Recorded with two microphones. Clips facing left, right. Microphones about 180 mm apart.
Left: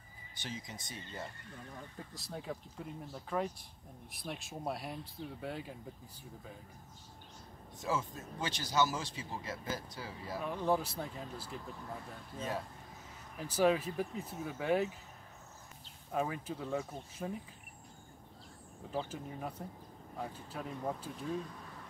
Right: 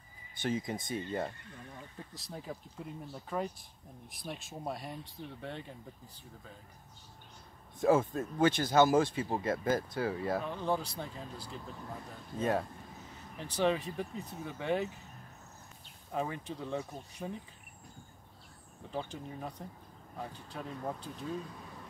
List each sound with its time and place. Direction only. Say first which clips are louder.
0.4 s speech: right 11 dB; 55° right (ahead or behind)
2.0 s speech: even; centre (ahead or behind)
7.8 s speech: right 10 dB; 55° right (ahead or behind)
10.4 s speech: left 1 dB; 5° left (ahead or behind)
12.4 s speech: right 8 dB; 60° right (ahead or behind)
13.4 s speech: left 1 dB; 5° left (ahead or behind)
16.1 s speech: even; 5° left (ahead or behind)
18.9 s speech: even; 5° left (ahead or behind)